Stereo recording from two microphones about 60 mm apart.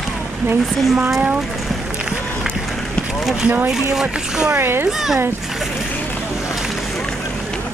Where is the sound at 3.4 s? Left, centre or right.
Right.